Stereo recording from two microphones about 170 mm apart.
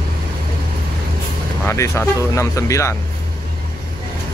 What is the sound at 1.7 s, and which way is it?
Speech, 15° left (ahead or behind).